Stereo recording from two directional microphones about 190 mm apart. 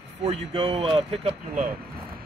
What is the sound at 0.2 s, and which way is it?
Speech, 30° right (ahead or behind).